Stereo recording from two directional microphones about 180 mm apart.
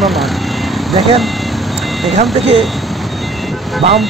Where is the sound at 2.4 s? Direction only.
35° right (ahead or behind).